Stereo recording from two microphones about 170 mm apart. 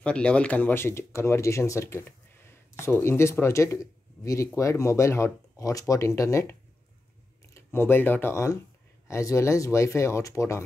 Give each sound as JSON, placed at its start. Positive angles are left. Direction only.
{"t": 0.0, "sound": "speech", "side_deg": 5}
{"t": 7.5, "sound": "speech", "side_deg": 15}